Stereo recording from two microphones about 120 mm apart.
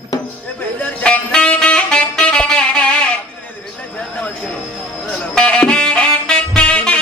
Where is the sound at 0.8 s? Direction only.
10° left (ahead or behind).